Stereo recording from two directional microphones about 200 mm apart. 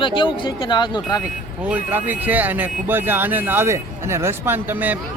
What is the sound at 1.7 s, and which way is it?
Speech, 10° right (ahead or behind).